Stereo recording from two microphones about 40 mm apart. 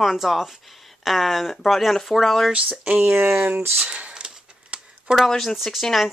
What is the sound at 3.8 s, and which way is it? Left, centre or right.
Speech, right.